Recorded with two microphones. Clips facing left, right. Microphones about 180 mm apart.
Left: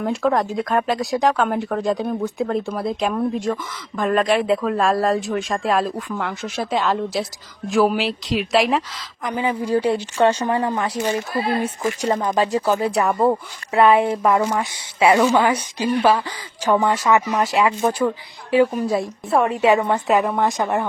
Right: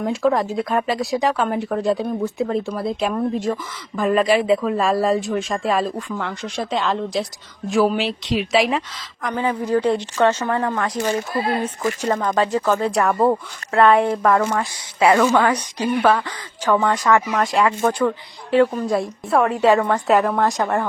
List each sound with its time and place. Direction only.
0.0 s speech: centre (ahead or behind)
15.4 s a woman's voice: 25° left (ahead or behind)
16.6 s speech: 15° left (ahead or behind)
19.7 s speech: 20° left (ahead or behind)
20.1 s speech: 5° left (ahead or behind)